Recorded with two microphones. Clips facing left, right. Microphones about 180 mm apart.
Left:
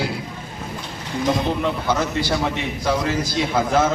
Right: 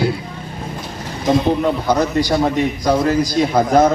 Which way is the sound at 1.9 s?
40° right (ahead or behind).